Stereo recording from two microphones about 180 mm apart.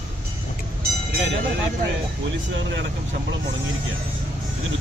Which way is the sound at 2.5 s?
80° right.